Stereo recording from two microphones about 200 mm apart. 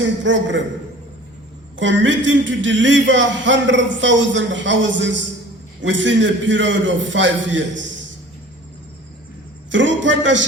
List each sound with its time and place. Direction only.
0.2 s a man's voice: 65° right (ahead or behind)
1.8 s speech: 65° right (ahead or behind)
9.7 s a man's voice: 65° right (ahead or behind)